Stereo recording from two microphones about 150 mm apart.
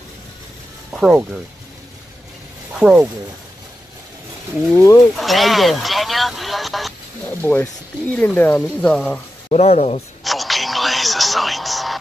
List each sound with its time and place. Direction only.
0.9 s speech: 5° right (ahead or behind)
2.8 s speech: 5° right (ahead or behind)
4.7 s speech: 20° left (ahead or behind)
5.1 s a sound: centre (ahead or behind)
7.6 s speech: 10° left (ahead or behind)
9.5 s speech: 45° left (ahead or behind)
10.2 s a sound: centre (ahead or behind)